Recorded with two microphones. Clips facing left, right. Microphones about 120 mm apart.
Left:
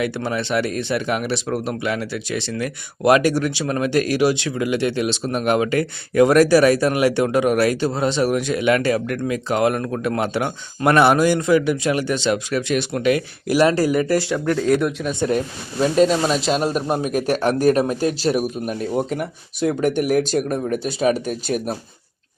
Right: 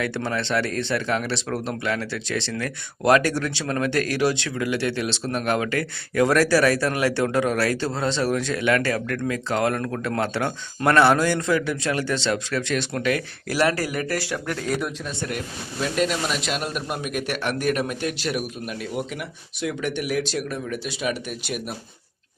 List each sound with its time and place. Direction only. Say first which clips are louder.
0.0 s speech: left 3 dB; 10° left (ahead or behind)
14.5 s speech: left 9 dB; centre (ahead or behind)
15.8 s speech: left 8 dB; 30° left (ahead or behind)